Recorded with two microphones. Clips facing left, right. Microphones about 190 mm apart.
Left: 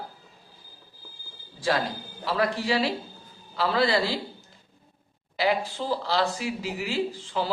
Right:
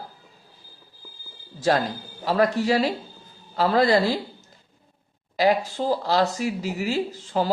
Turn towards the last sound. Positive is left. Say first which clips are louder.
# right 3 dB
turn(degrees=-45)  # may be behind; listen again after turning